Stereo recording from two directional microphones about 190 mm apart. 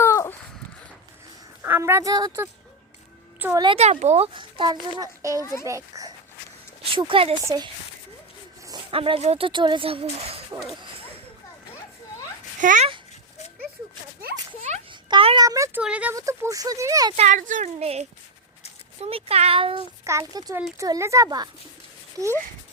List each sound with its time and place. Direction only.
0.0 s a sound: 15° left (ahead or behind)
1.6 s a woman's voice: 10° right (ahead or behind)
3.6 s a child's voice: 30° right (ahead or behind)
5.4 s a child's voice: 15° left (ahead or behind)
5.6 s a child's voice: 15° right (ahead or behind)
6.9 s a child's voice: 25° right (ahead or behind)
12.6 s speech: 40° right (ahead or behind)
14.6 s a sound: 30° right (ahead or behind)
15.4 s speech: 15° right (ahead or behind)
16.1 s speech: 15° right (ahead or behind)
17.2 s speech: 40° right (ahead or behind)
19.0 s speech: 30° right (ahead or behind)
20.1 s speech: 20° right (ahead or behind)